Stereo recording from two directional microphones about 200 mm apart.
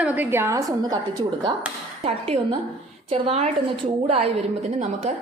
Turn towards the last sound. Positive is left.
turn(degrees=-35)  # may be behind; listen again after turning